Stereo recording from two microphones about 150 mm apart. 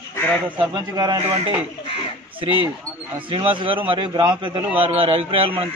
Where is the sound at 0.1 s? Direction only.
10° left (ahead or behind).